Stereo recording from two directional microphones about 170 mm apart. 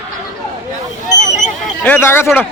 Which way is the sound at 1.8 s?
10° left (ahead or behind).